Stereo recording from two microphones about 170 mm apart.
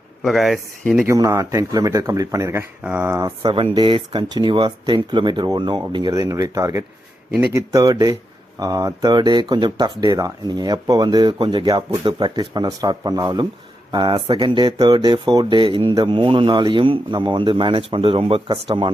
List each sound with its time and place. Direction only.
0.2 s speech: centre (ahead or behind)
1.0 s speech: 20° right (ahead or behind)